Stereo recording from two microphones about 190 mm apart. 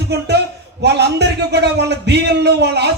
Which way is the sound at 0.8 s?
60° right (ahead or behind).